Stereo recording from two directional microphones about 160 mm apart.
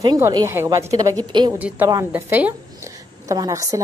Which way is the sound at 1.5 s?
10° right (ahead or behind).